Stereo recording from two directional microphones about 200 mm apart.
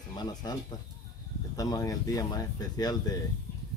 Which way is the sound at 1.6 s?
20° left (ahead or behind).